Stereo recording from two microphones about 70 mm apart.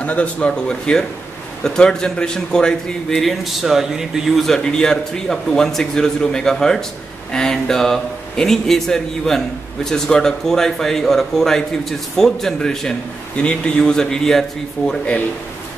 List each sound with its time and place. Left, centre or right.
0.0 s speech: centre
4.5 s speech: centre